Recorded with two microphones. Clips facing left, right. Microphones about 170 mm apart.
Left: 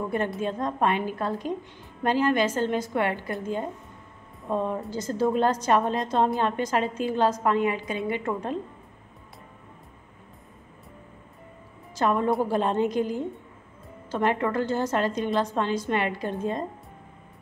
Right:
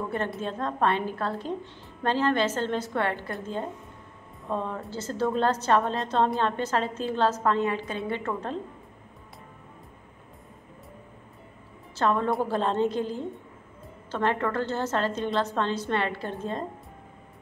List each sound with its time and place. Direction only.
0.4 s a woman's voice: 15° left (ahead or behind)
4.5 s a woman's voice: 15° left (ahead or behind)
11.9 s a woman's voice: 10° left (ahead or behind)